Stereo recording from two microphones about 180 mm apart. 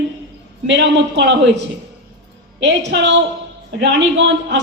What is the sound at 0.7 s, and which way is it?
A man's voice, 80° right.